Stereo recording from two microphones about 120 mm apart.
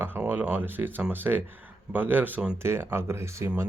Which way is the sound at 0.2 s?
10° right (ahead or behind).